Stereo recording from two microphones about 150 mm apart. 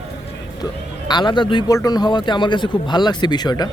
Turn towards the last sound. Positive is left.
turn(degrees=25)  # may be behind; listen again after turning